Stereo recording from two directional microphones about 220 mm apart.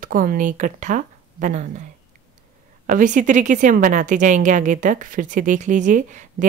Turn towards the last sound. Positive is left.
turn(degrees=-35)  # may be behind; listen again after turning